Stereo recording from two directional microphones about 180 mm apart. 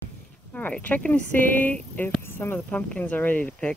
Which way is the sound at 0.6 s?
10° left (ahead or behind).